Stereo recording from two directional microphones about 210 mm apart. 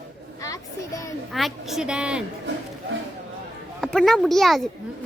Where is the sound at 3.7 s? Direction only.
Centre (ahead or behind).